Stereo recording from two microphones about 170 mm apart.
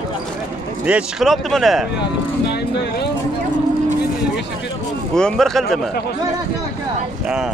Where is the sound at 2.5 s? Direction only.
80° left.